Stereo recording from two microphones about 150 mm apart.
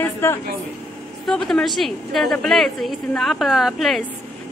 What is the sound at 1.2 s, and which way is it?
A woman's voice, centre (ahead or behind).